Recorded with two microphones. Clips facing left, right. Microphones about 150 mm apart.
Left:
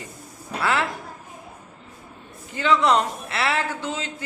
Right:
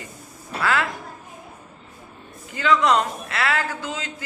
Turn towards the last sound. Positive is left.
turn(degrees=30)  # may be behind; listen again after turning